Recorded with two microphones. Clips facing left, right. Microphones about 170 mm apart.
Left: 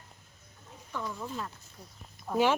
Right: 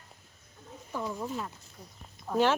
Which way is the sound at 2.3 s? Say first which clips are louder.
Even; 10° left (ahead or behind).